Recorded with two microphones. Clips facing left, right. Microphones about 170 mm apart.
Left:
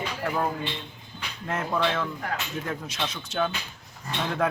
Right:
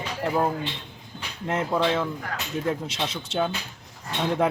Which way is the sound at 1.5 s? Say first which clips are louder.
Right 3 dB; 20° right (ahead or behind).